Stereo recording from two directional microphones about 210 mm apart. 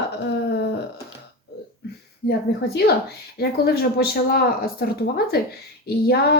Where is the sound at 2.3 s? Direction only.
50° left (ahead or behind).